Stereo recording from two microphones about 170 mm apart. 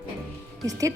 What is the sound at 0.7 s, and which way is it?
Speech, 20° right (ahead or behind).